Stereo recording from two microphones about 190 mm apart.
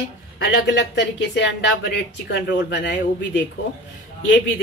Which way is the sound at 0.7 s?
70° left (ahead or behind).